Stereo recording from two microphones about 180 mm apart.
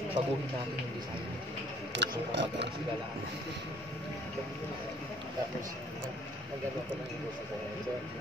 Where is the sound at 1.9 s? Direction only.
75° right (ahead or behind).